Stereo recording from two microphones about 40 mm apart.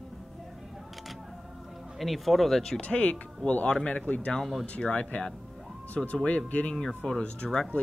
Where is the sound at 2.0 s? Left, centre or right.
Centre.